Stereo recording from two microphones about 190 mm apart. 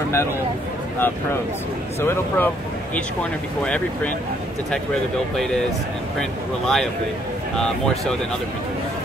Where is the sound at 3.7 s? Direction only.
10° left (ahead or behind).